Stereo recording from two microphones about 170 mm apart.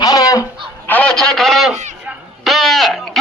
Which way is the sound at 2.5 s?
Centre (ahead or behind).